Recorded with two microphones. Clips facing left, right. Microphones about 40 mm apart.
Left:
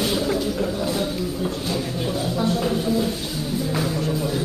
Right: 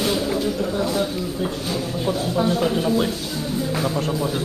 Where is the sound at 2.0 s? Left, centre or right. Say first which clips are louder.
Right 3 dB; centre.